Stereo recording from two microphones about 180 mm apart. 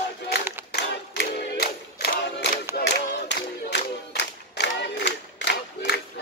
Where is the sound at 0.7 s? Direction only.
70° left (ahead or behind).